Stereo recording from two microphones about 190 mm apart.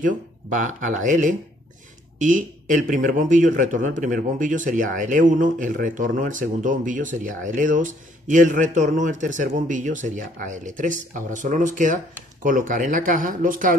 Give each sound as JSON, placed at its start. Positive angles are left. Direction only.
{"t": 0.0, "sound": "speech", "side_deg": -40}